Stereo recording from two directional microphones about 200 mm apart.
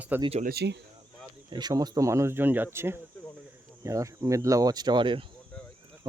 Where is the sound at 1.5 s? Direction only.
20° right (ahead or behind).